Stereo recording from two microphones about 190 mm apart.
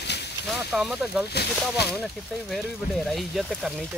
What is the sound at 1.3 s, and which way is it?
Speech, 60° left (ahead or behind).